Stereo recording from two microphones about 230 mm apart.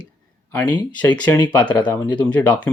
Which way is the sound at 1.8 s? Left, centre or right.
Centre.